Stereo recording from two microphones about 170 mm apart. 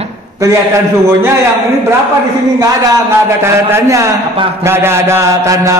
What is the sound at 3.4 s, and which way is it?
A man's voice, 15° right (ahead or behind).